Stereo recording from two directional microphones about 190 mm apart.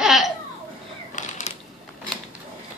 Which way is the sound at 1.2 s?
40° left (ahead or behind).